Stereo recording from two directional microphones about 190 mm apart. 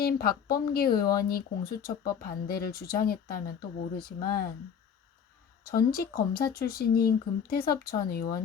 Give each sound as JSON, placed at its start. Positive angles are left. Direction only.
{"t": 0.0, "sound": "speech", "side_deg": 50}
{"t": 5.6, "sound": "speech", "side_deg": 55}